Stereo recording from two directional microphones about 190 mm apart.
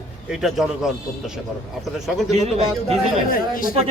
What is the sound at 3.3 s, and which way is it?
Speech, 45° left (ahead or behind).